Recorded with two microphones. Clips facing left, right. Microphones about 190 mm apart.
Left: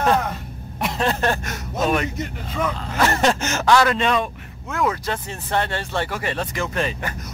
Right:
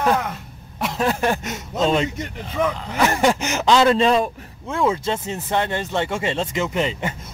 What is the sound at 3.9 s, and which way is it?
Speech, 30° right (ahead or behind).